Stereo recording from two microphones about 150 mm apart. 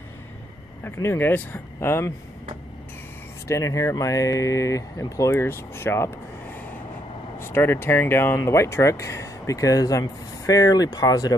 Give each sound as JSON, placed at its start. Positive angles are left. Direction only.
{"t": 0.8, "sound": "speech", "side_deg": 15}
{"t": 3.4, "sound": "speech", "side_deg": 20}